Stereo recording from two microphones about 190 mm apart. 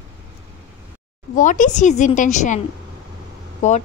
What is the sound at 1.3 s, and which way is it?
A woman's voice, 40° left (ahead or behind).